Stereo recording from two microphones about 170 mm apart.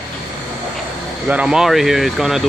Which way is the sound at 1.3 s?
5° right (ahead or behind).